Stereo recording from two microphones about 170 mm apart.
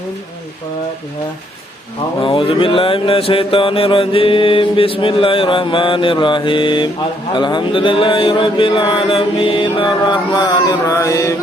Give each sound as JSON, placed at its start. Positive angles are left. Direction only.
{"t": 2.2, "sound": "mantra", "side_deg": 30}